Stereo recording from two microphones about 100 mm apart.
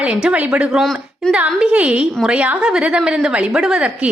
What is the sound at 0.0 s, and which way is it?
A woman's voice, 10° right (ahead or behind).